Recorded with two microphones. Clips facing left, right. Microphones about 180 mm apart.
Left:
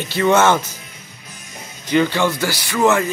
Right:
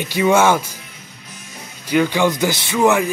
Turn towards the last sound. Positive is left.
turn(degrees=-15)  # may be behind; listen again after turning